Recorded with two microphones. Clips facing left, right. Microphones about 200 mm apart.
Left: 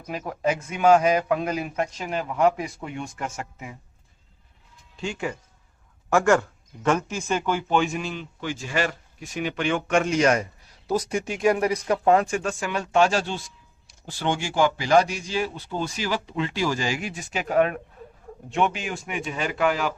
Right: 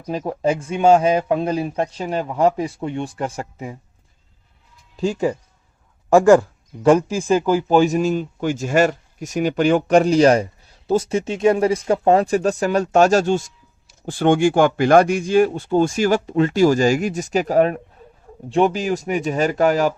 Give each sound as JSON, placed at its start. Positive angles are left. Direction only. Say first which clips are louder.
{"t": 0.1, "sound": "speech", "louder": "right 5 dB", "side_deg": -30}
{"t": 4.9, "sound": "speech", "louder": "right 9 dB", "side_deg": -35}